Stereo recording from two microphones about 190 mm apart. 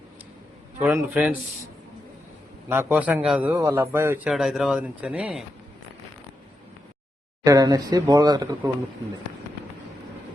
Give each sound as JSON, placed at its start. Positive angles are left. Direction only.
{"t": 0.9, "sound": "a man's voice", "side_deg": -10}
{"t": 2.6, "sound": "a man's voice", "side_deg": -10}
{"t": 4.3, "sound": "speech", "side_deg": 0}
{"t": 7.4, "sound": "speech", "side_deg": -20}